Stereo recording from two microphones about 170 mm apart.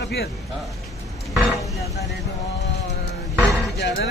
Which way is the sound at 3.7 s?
80° left.